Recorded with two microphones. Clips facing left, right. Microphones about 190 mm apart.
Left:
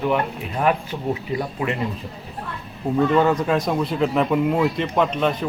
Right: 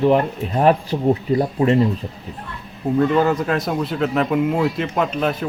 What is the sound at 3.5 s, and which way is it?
Speech, centre (ahead or behind).